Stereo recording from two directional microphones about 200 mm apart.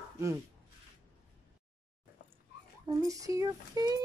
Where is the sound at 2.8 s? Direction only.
15° right (ahead or behind).